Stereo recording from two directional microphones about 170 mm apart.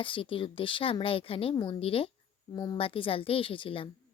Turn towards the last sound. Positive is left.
turn(degrees=30)  # may be behind; listen again after turning